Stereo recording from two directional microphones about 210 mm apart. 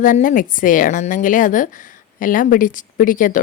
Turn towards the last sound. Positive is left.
turn(degrees=40)  # may be behind; listen again after turning